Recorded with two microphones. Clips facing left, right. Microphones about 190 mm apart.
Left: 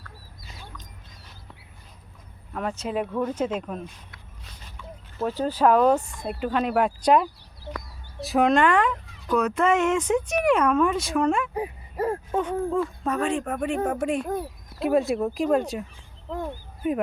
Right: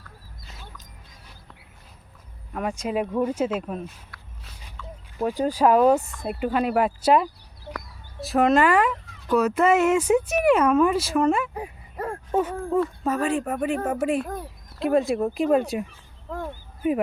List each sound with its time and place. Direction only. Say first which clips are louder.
0.4 s dog: left 1 dB; centre (ahead or behind)
2.5 s speech: right 2 dB; 10° right (ahead or behind)
4.8 s a sound: right 1 dB; 15° left (ahead or behind)
5.1 s speech: right 2 dB; 15° right (ahead or behind)